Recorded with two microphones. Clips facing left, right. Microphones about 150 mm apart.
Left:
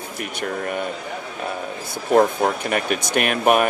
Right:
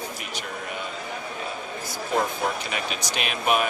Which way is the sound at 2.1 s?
55° left (ahead or behind).